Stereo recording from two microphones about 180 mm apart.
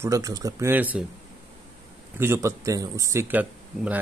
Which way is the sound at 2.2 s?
15° right (ahead or behind).